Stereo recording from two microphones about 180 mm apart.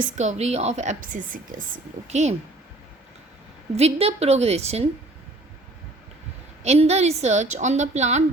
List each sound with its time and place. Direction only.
0.0 s a woman's voice: 40° right (ahead or behind)
3.8 s a woman's voice: 35° right (ahead or behind)
6.6 s a woman's voice: 35° right (ahead or behind)